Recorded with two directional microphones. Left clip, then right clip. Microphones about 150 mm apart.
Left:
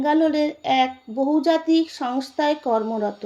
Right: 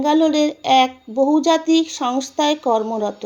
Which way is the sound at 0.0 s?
20° right (ahead or behind).